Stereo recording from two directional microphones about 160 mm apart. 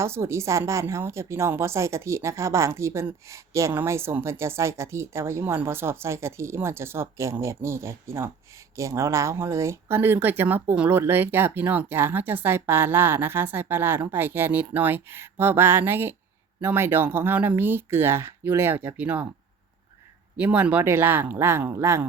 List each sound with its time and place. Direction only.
0.0 s a woman's voice: 15° right (ahead or behind)
20.3 s a woman's voice: 10° right (ahead or behind)